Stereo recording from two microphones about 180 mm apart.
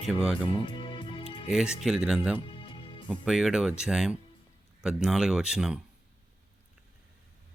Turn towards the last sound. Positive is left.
turn(degrees=-5)  # may be behind; listen again after turning